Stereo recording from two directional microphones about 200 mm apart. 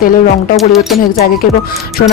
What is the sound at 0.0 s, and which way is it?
Speech, 45° left (ahead or behind).